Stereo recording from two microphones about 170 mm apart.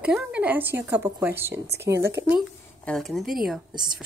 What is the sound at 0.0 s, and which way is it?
A woman's voice, 5° right (ahead or behind).